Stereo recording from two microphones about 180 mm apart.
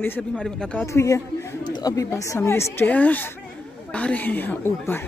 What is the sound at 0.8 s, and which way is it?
Speech, 15° left (ahead or behind).